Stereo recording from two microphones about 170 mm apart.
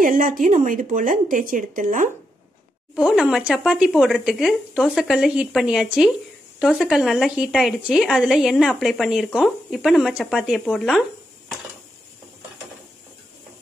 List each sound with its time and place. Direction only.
0.0 s a woman's voice: 55° right (ahead or behind)
3.0 s speech: 5° right (ahead or behind)